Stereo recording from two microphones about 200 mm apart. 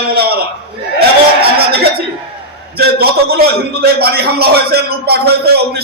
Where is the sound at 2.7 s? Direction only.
50° right (ahead or behind).